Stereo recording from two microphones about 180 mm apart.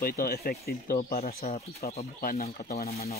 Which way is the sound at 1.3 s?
40° left (ahead or behind).